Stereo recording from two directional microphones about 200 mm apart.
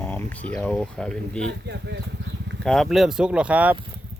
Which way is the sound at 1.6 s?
60° right (ahead or behind).